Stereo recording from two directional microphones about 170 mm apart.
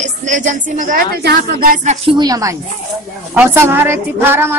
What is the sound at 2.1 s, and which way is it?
Speech, 25° right (ahead or behind).